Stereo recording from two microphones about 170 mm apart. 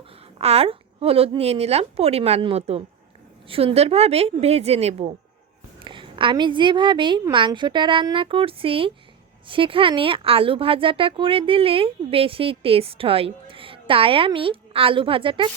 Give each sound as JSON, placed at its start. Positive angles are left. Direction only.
{"t": 0.3, "sound": "a woman's voice", "side_deg": -35}